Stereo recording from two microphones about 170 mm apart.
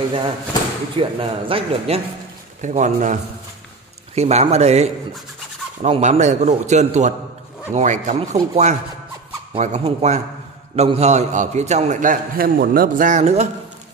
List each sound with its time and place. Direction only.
0.9 s a man's voice: 30° right (ahead or behind)
2.6 s a man's voice: 45° right (ahead or behind)